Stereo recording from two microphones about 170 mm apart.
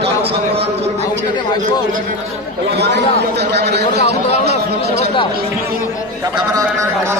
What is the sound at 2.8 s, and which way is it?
Speech, 80° right.